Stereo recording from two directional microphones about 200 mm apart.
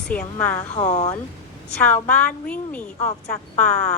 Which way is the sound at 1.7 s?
5° left (ahead or behind).